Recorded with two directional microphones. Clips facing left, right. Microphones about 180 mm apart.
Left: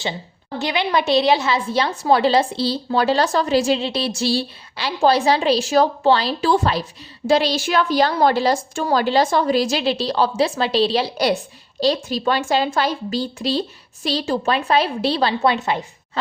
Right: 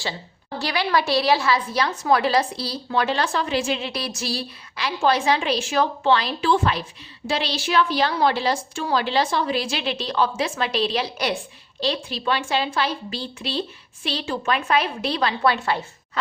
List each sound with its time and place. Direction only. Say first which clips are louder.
0.6 s a woman's voice: left 2 dB; 20° left (ahead or behind)